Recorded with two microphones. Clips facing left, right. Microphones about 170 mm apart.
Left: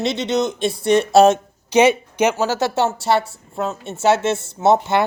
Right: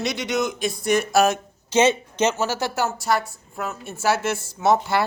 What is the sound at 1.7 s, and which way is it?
Speech, 15° left (ahead or behind).